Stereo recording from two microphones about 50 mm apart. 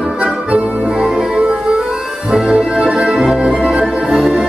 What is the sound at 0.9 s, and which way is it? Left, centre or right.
Music, centre.